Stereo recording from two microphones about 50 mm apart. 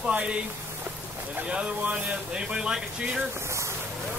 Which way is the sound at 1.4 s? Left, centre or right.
Right.